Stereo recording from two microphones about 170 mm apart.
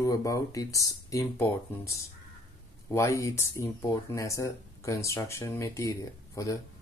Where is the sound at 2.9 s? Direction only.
20° left (ahead or behind).